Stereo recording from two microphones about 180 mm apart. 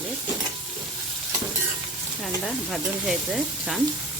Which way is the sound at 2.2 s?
Centre (ahead or behind).